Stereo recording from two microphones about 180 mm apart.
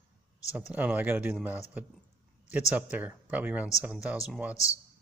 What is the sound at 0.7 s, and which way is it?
Speech, 10° right (ahead or behind).